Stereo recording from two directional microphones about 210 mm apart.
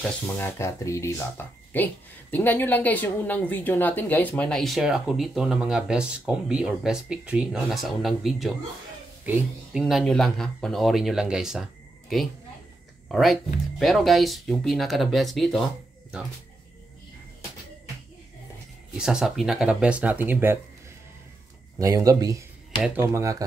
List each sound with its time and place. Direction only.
0.0 s speech: 10° left (ahead or behind)
13.1 s speech: centre (ahead or behind)
18.9 s speech: 5° right (ahead or behind)
21.7 s speech: 15° right (ahead or behind)